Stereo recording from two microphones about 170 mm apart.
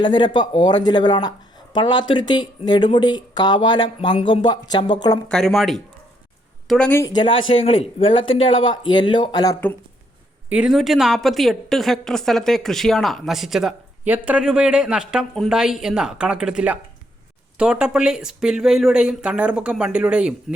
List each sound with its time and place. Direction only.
0.0 s speech: 25° left (ahead or behind)
5.3 s a woman's voice: centre (ahead or behind)
7.0 s speech: 25° left (ahead or behind)
10.5 s a woman's voice: 5° right (ahead or behind)